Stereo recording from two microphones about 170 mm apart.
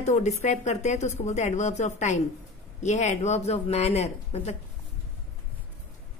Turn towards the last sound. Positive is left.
turn(degrees=40)  # may be behind; listen again after turning